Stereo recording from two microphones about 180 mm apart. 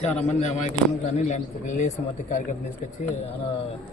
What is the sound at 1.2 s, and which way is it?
Speech, 40° left (ahead or behind).